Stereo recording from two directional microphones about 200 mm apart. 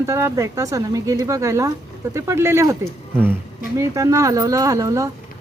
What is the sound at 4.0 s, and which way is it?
Speech, 15° right (ahead or behind).